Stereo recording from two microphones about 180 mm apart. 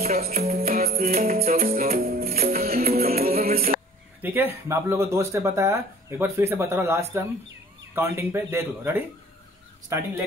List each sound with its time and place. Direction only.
0.0 s music: 55° right (ahead or behind)
4.2 s a sound: 10° right (ahead or behind)
4.6 s speech: 15° right (ahead or behind)